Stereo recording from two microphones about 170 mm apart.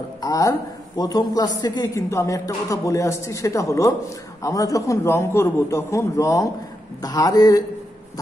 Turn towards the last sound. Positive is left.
turn(degrees=20)  # may be behind; listen again after turning